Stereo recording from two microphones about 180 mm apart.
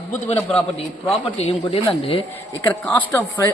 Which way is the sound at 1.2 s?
30° left (ahead or behind).